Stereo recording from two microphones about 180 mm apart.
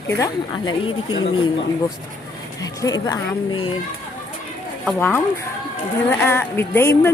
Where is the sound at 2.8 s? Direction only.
20° left (ahead or behind).